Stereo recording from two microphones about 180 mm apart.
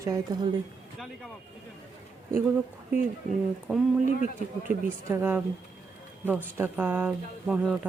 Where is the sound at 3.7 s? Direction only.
10° right (ahead or behind).